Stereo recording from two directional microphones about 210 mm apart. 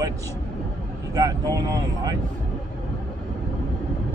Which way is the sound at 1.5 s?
15° right (ahead or behind).